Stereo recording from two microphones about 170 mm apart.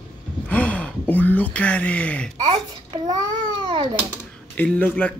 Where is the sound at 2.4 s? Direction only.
25° right (ahead or behind).